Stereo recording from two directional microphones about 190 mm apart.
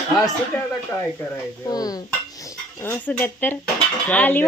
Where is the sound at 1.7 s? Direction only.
20° left (ahead or behind).